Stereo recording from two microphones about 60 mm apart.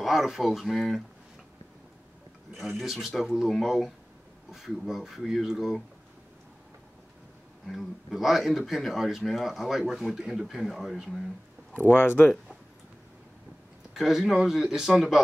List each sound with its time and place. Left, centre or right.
0.0 s speech: centre
2.8 s speech: centre
7.6 s speech: centre
11.9 s speech: left
13.9 s speech: centre